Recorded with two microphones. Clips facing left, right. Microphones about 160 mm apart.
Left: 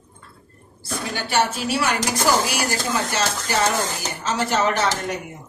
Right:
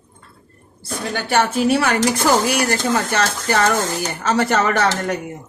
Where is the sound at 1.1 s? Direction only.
55° right (ahead or behind).